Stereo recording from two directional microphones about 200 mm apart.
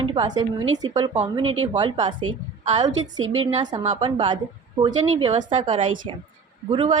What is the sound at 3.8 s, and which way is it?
A woman's voice, 30° right (ahead or behind).